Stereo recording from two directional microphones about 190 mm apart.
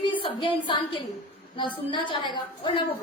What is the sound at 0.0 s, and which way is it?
A woman's voice, 25° left (ahead or behind).